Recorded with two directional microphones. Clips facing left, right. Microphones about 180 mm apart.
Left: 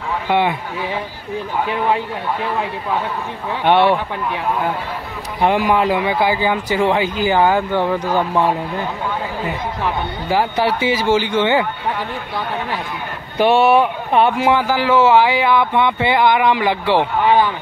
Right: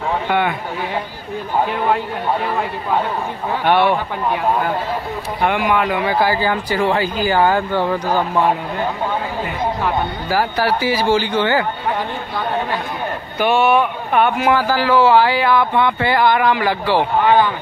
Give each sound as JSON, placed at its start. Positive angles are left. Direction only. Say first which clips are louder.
{"t": 0.3, "sound": "speech", "louder": "left 3 dB", "side_deg": 25}
{"t": 3.6, "sound": "speech", "louder": "left 2 dB", "side_deg": 25}
{"t": 5.4, "sound": "speech", "louder": "left 2 dB", "side_deg": 30}
{"t": 6.0, "sound": "speech", "louder": "even", "side_deg": 20}
{"t": 10.3, "sound": "speech", "louder": "left 1 dB", "side_deg": 20}
{"t": 13.4, "sound": "speech", "louder": "left 2 dB", "side_deg": 35}